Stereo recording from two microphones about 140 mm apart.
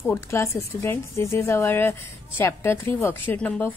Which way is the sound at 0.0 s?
20° left (ahead or behind).